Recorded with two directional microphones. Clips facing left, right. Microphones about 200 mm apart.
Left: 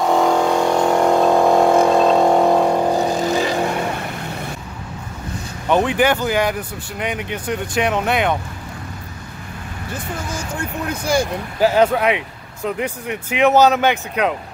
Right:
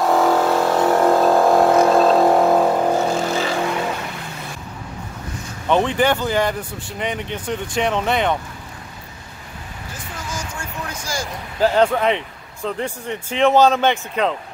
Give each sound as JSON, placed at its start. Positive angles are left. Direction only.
{"t": 0.0, "sound": "vehicle", "side_deg": 0}
{"t": 2.9, "sound": "vehicle", "side_deg": 15}
{"t": 5.7, "sound": "speech", "side_deg": 5}
{"t": 10.3, "sound": "speech", "side_deg": 60}
{"t": 11.6, "sound": "speech", "side_deg": 10}